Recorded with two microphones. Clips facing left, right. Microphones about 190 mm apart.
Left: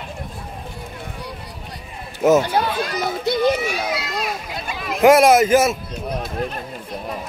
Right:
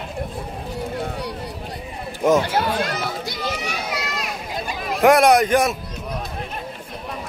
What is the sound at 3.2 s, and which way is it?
Children playing, 60° left (ahead or behind).